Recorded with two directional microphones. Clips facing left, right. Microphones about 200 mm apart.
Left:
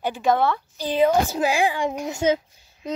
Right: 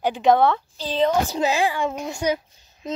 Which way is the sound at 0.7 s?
10° left (ahead or behind).